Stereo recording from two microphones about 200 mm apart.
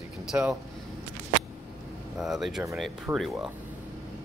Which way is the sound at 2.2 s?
Centre (ahead or behind).